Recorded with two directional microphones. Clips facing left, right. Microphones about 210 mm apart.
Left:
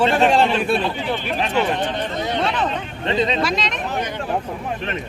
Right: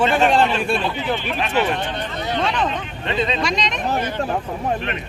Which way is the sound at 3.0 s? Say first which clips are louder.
Left 2 dB; 35° left (ahead or behind).